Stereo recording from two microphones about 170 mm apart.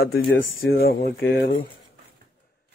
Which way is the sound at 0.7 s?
65° left (ahead or behind).